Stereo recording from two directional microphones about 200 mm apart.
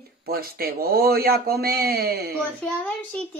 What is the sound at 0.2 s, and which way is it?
Speech, 50° right (ahead or behind).